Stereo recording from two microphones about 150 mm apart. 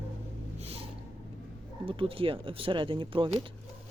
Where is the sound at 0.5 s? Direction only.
40° right (ahead or behind).